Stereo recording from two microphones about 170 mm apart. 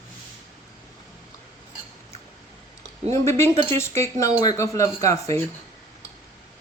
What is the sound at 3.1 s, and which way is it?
Speech, 15° left (ahead or behind).